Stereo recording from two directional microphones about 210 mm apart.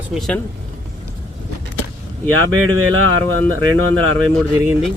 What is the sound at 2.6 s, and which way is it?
Speech, 75° right (ahead or behind).